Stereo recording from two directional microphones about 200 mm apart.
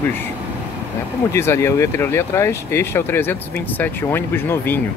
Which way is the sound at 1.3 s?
15° left (ahead or behind).